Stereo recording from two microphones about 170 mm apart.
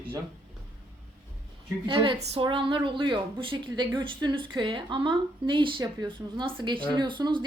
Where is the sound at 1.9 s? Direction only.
30° right (ahead or behind).